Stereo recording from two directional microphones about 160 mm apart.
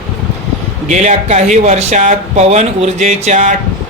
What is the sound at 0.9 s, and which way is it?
Speech, 45° right (ahead or behind).